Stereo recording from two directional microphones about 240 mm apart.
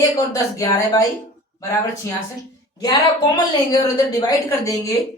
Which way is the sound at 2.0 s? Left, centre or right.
Centre.